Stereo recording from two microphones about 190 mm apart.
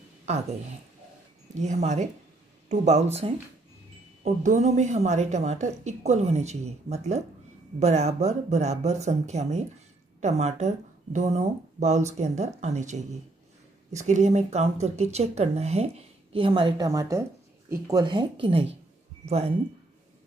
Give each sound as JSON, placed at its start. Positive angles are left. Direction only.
{"t": 0.2, "sound": "speech", "side_deg": -35}
{"t": 1.6, "sound": "speech", "side_deg": -35}